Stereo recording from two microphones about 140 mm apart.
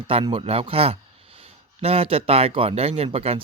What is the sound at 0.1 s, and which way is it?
Speech, 40° right (ahead or behind).